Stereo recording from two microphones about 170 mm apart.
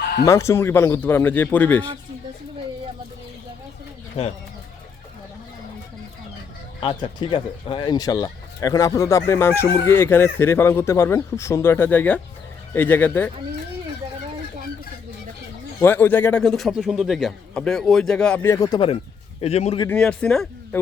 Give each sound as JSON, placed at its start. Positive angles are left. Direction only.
{"t": 0.3, "sound": "speech", "side_deg": 15}
{"t": 6.7, "sound": "speech", "side_deg": 25}
{"t": 15.8, "sound": "a man's voice", "side_deg": 10}
{"t": 18.5, "sound": "speech", "side_deg": 20}
{"t": 19.4, "sound": "a man's voice", "side_deg": 40}
{"t": 19.9, "sound": "a man's voice", "side_deg": 5}